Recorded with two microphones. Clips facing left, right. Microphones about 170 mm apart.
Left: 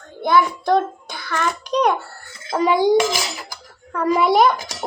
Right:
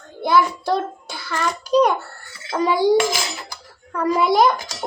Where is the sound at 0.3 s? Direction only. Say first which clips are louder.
Left 1 dB; 5° right (ahead or behind).